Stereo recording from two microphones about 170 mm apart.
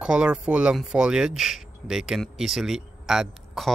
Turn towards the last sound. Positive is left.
turn(degrees=0)  # may be behind; listen again after turning